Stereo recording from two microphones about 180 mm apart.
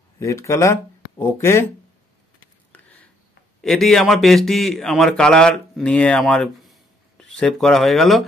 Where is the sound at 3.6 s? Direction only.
Centre (ahead or behind).